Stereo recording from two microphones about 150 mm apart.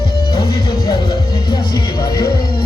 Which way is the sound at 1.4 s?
25° left (ahead or behind).